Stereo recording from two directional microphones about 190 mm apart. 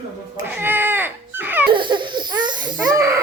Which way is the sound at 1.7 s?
25° right (ahead or behind).